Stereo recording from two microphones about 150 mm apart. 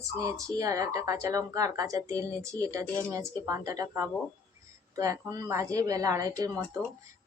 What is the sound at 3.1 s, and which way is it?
Speech, 20° right (ahead or behind).